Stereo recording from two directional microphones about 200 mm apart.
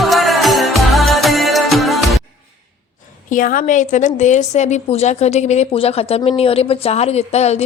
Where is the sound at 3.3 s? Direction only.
45° left (ahead or behind).